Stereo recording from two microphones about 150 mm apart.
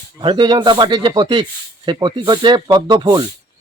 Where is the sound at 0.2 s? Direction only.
35° right (ahead or behind).